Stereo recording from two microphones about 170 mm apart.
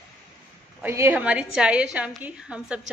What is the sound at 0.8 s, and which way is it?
A woman's voice, 15° right (ahead or behind).